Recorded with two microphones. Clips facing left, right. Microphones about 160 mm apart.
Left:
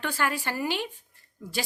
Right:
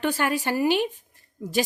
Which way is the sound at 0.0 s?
15° right (ahead or behind).